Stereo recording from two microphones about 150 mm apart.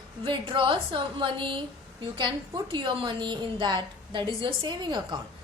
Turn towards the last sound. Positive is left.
turn(degrees=-30)  # may be behind; listen again after turning